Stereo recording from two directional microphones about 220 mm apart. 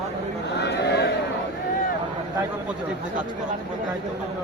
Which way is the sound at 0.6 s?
50° left (ahead or behind).